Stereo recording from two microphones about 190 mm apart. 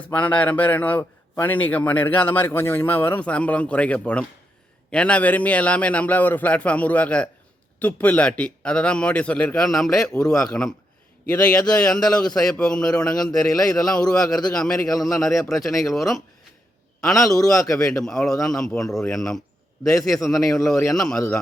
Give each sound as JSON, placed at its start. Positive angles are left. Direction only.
{"t": 0.0, "sound": "a man's voice", "side_deg": 10}
{"t": 17.4, "sound": "a man's voice", "side_deg": 15}
{"t": 17.7, "sound": "a man's voice", "side_deg": 0}
{"t": 19.9, "sound": "a man's voice", "side_deg": 15}
{"t": 20.9, "sound": "a man's voice", "side_deg": 0}